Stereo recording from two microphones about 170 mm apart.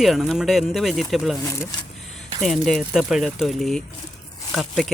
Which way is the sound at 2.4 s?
Centre (ahead or behind).